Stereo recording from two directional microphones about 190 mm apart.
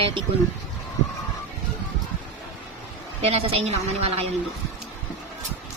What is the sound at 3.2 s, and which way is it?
Speech, 30° right (ahead or behind).